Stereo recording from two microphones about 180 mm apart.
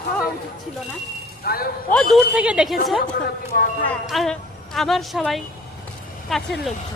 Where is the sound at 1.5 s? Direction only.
60° left (ahead or behind).